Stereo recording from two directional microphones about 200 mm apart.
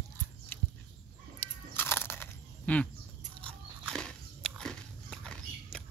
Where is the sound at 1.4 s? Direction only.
10° left (ahead or behind).